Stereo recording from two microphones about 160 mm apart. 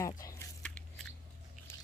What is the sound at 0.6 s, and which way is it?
Biting, 5° left (ahead or behind).